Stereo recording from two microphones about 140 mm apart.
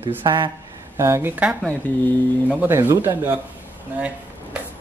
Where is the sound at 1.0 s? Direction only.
15° right (ahead or behind).